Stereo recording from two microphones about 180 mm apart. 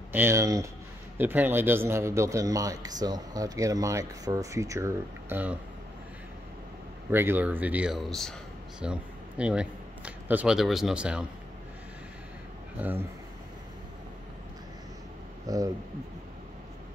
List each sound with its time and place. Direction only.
0.1 s a man's voice: 15° right (ahead or behind)
7.1 s a man's voice: 10° right (ahead or behind)
15.4 s speech: 20° right (ahead or behind)